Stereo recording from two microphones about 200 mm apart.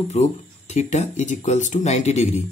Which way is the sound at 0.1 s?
35° left (ahead or behind).